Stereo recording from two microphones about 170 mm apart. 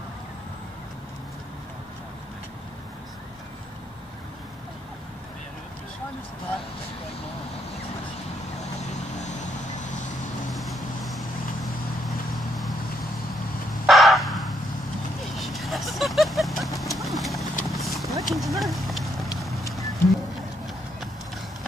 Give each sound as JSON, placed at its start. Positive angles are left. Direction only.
{"t": 9.2, "sound": "vehicle", "side_deg": 45}
{"t": 10.5, "sound": "vehicle", "side_deg": 0}
{"t": 13.8, "sound": "crow", "side_deg": 0}
{"t": 15.3, "sound": "vehicle", "side_deg": 0}
{"t": 16.9, "sound": "clip-clop", "side_deg": 0}
{"t": 17.6, "sound": "vehicle", "side_deg": 0}
{"t": 19.7, "sound": "a sound", "side_deg": 0}